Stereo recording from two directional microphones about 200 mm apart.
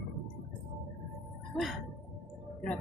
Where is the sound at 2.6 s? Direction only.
5° left (ahead or behind).